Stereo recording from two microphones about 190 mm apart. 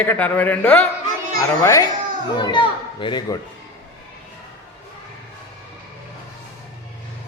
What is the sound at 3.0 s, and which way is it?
Dishes, 25° left (ahead or behind).